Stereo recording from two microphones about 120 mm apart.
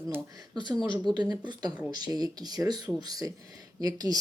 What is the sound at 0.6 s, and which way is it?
Speech, 35° right (ahead or behind).